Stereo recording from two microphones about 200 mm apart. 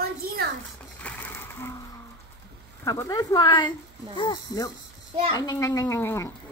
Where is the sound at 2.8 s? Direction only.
15° left (ahead or behind).